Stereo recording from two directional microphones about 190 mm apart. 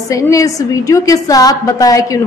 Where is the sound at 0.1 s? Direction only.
15° left (ahead or behind).